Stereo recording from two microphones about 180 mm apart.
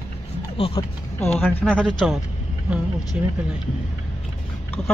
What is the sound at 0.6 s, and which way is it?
Speech, 30° left (ahead or behind).